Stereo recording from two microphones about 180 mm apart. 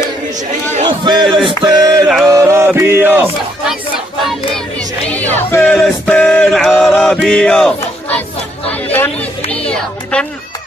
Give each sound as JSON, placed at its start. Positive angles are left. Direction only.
{"t": 0.8, "sound": "crowd", "side_deg": -25}
{"t": 1.3, "sound": "music", "side_deg": -25}
{"t": 5.1, "sound": "music", "side_deg": 10}
{"t": 5.8, "sound": "chant", "side_deg": 5}
{"t": 8.8, "sound": "chatter", "side_deg": 10}
{"t": 9.7, "sound": "music", "side_deg": 5}